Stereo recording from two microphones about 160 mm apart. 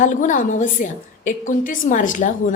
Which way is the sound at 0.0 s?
55° left (ahead or behind).